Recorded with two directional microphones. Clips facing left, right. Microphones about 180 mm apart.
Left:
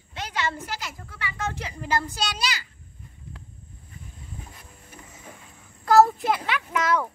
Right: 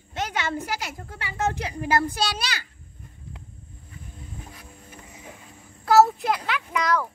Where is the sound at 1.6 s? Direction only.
60° right (ahead or behind).